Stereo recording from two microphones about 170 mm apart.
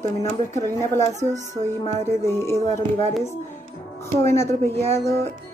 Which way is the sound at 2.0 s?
15° left (ahead or behind).